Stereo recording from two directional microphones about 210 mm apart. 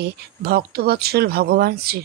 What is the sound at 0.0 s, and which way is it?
A woman's voice, 45° right (ahead or behind).